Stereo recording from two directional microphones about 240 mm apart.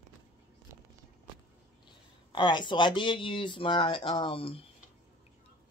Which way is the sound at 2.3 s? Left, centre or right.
Centre.